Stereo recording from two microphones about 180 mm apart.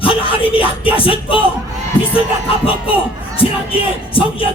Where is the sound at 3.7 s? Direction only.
30° left (ahead or behind).